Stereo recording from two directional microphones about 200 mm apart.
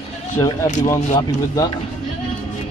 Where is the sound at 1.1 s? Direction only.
20° left (ahead or behind).